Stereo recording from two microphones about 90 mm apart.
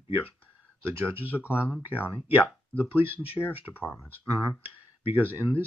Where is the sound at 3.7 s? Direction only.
20° left (ahead or behind).